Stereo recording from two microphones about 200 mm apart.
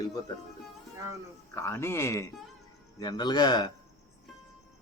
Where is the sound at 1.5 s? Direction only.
10° left (ahead or behind).